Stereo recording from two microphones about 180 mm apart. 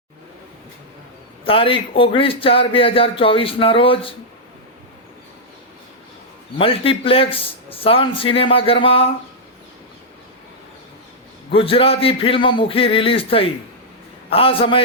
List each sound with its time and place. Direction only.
1.5 s a man's voice: 30° left (ahead or behind)
6.6 s a man's voice: 30° left (ahead or behind)
11.5 s a man's voice: 30° left (ahead or behind)